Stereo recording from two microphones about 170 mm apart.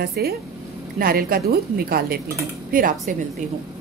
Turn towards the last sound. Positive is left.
turn(degrees=-50)  # may be behind; listen again after turning